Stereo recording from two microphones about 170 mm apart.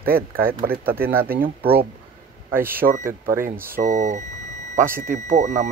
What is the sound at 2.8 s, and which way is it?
Speech, 55° right (ahead or behind).